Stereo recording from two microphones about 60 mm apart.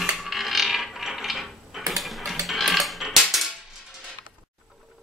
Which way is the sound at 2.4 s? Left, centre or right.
Centre.